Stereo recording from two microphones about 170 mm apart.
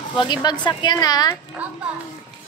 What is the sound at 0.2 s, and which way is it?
Speech, 25° left (ahead or behind).